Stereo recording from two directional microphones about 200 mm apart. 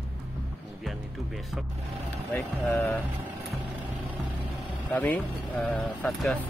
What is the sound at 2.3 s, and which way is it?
Speech, 10° left (ahead or behind).